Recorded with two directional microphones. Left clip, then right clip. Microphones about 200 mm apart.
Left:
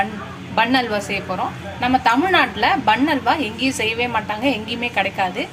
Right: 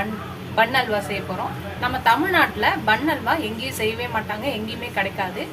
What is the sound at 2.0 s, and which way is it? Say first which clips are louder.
A woman's voice: right 1 dB; 25° left (ahead or behind).